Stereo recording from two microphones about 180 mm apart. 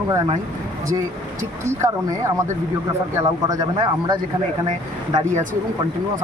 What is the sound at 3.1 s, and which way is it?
Speech, 20° right (ahead or behind).